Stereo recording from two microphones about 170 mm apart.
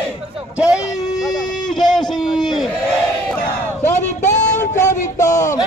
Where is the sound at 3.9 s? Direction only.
45° left (ahead or behind).